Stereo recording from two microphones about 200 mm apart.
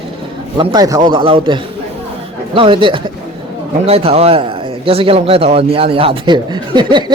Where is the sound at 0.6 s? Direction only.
20° right (ahead or behind).